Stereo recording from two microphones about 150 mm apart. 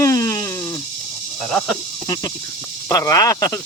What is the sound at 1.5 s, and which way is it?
Speech, 5° left (ahead or behind).